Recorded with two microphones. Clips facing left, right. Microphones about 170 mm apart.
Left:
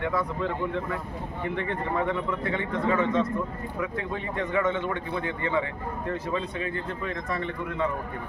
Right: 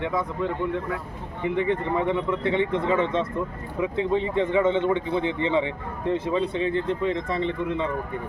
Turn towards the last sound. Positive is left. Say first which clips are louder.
# right 5 dB
turn(degrees=-20)  # may be behind; listen again after turning